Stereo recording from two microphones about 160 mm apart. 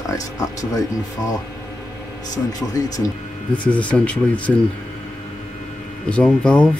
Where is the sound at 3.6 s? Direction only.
10° left (ahead or behind).